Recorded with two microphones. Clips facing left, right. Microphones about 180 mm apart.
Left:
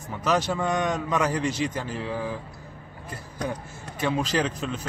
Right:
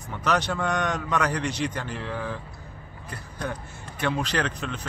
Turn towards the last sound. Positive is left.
turn(degrees=5)  # may be behind; listen again after turning